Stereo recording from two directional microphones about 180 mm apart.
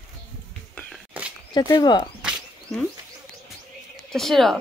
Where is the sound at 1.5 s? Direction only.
20° left (ahead or behind).